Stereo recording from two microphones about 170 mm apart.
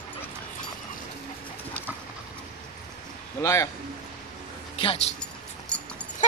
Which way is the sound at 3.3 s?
15° left (ahead or behind).